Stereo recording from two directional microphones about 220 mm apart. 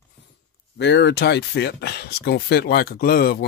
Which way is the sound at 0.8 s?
50° left (ahead or behind).